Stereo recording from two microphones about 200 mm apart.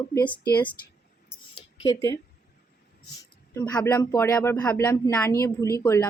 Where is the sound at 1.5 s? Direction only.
20° left (ahead or behind).